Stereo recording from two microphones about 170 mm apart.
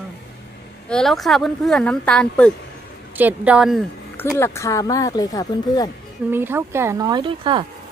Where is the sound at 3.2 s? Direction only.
10° right (ahead or behind).